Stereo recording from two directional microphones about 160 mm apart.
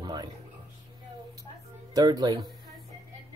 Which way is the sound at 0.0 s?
25° right (ahead or behind).